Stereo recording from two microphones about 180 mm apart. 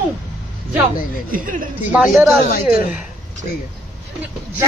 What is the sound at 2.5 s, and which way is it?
Speech, 55° left (ahead or behind).